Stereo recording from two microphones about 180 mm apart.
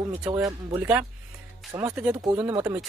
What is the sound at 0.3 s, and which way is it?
Speech, 20° right (ahead or behind).